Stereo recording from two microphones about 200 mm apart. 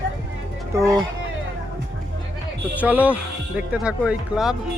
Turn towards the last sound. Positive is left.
turn(degrees=-5)  # may be behind; listen again after turning